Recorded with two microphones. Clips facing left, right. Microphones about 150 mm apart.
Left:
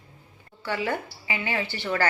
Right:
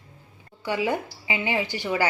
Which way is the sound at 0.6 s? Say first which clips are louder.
Right 3 dB; 15° right (ahead or behind).